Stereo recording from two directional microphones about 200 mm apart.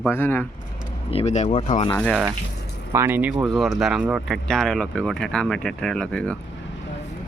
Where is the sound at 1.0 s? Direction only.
30° left (ahead or behind).